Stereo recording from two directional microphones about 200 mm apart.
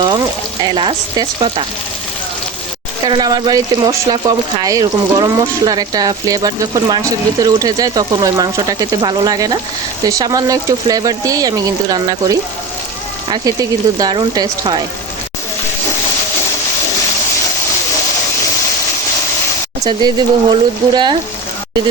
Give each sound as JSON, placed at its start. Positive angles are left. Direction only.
{"t": 0.6, "sound": "speech", "side_deg": -20}
{"t": 3.0, "sound": "speech", "side_deg": -20}
{"t": 19.8, "sound": "speech", "side_deg": -20}